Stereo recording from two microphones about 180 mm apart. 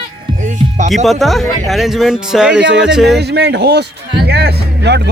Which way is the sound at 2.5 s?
75° right (ahead or behind).